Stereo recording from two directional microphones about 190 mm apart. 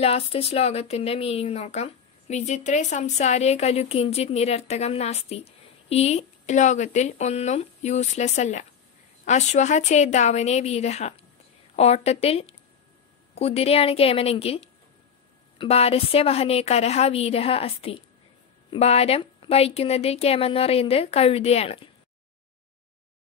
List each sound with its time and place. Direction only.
0.0 s speech: 30° left (ahead or behind)